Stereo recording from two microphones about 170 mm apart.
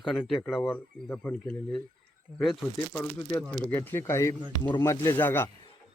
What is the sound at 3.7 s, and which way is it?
Speech, 10° left (ahead or behind).